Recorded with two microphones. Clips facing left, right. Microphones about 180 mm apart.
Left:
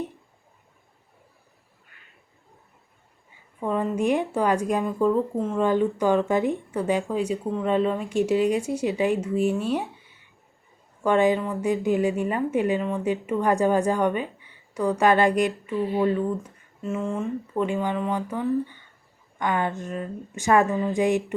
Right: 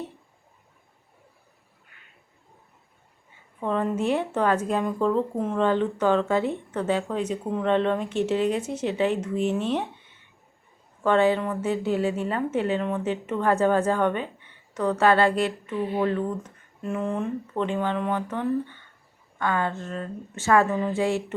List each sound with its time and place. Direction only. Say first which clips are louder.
3.6 s a woman's voice: left 1 dB; 10° left (ahead or behind)
11.0 s a woman's voice: even; 15° left (ahead or behind)